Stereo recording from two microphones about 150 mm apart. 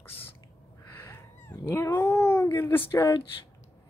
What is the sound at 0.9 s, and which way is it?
Cat, 15° left (ahead or behind).